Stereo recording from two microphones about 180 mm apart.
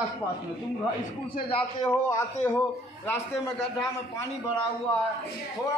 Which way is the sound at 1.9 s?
10° left (ahead or behind).